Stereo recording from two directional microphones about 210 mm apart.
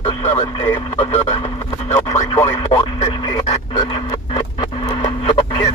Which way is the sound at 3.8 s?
25° left (ahead or behind).